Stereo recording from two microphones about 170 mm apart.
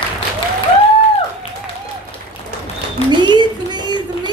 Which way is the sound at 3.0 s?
35° left (ahead or behind).